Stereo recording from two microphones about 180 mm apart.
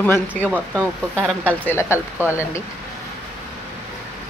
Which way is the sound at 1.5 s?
10° left (ahead or behind).